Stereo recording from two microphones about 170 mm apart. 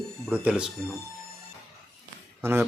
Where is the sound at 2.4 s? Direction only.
10° right (ahead or behind).